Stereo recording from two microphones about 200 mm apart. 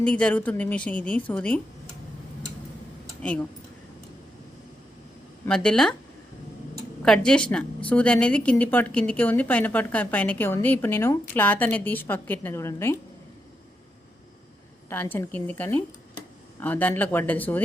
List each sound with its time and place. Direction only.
0.0 s a woman's voice: 5° left (ahead or behind)
3.2 s speech: 5° left (ahead or behind)
5.5 s speech: 5° left (ahead or behind)
7.0 s a woman's voice: 5° left (ahead or behind)
14.8 s a woman's voice: 10° left (ahead or behind)